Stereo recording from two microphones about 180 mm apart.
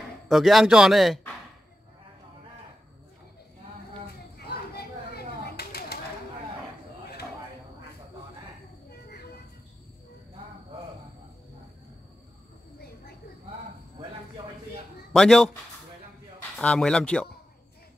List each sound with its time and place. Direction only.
0.3 s a man's voice: centre (ahead or behind)
4.5 s a sound: 60° left (ahead or behind)
15.1 s a man's voice: 5° left (ahead or behind)
16.5 s a man's voice: 5° left (ahead or behind)